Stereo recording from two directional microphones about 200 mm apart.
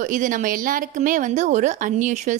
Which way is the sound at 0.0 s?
40° right (ahead or behind).